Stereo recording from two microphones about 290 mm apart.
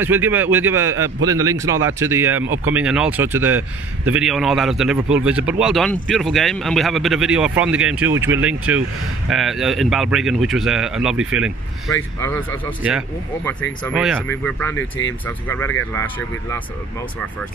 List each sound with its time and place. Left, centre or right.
0.0 s a man's voice: centre
11.9 s speech: centre